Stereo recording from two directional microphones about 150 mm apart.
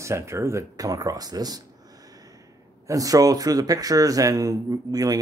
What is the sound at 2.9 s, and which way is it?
A man's voice, 25° right (ahead or behind).